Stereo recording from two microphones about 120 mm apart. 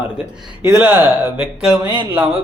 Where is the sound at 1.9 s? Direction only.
45° right (ahead or behind).